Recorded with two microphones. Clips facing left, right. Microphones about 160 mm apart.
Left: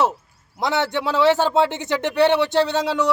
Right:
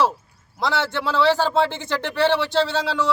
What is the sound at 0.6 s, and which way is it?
A man's voice, 20° left (ahead or behind).